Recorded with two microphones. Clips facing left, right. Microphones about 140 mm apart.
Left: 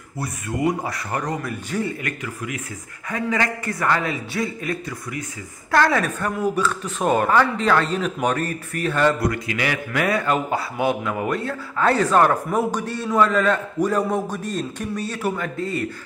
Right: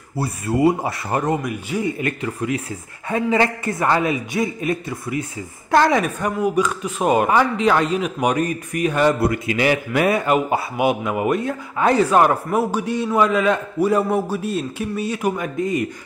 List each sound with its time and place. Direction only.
0.2 s a man's voice: 30° right (ahead or behind)
1.5 s speech: 10° right (ahead or behind)
2.0 s a man's voice: 25° right (ahead or behind)
9.2 s speech: 25° right (ahead or behind)